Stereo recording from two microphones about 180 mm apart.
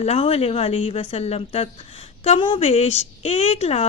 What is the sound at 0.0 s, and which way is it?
Speech, 35° left (ahead or behind).